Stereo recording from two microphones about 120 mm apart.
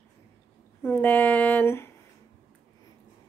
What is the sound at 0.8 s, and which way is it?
A woman's voice, 15° left (ahead or behind).